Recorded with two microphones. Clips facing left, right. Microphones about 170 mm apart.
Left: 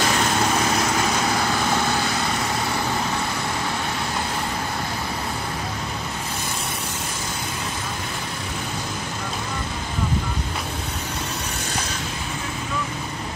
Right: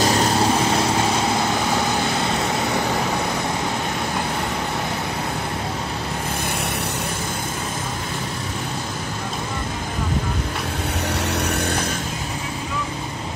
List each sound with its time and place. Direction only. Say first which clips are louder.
0.0 s vehicle: right 3 dB; 35° right (ahead or behind)